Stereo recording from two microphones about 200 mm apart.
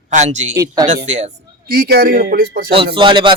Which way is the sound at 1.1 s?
35° right (ahead or behind).